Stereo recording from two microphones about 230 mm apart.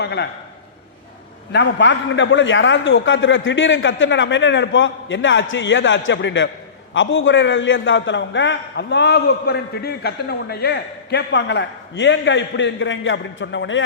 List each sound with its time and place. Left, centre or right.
0.0 s a man's voice: left
1.5 s a man's voice: left